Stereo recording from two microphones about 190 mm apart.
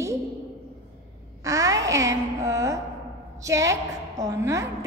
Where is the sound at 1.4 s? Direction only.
15° right (ahead or behind).